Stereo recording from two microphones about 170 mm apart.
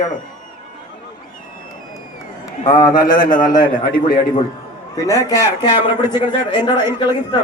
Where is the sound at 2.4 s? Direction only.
20° left (ahead or behind).